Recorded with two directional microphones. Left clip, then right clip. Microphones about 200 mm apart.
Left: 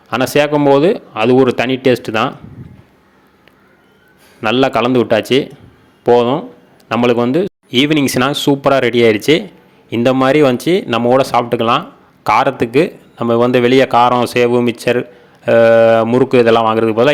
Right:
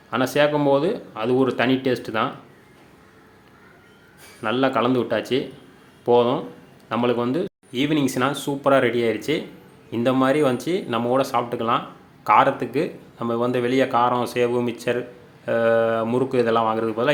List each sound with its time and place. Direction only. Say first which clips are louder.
0.1 s speech: left 7 dB; 40° left (ahead or behind)
4.4 s speech: left 8 dB; 40° left (ahead or behind)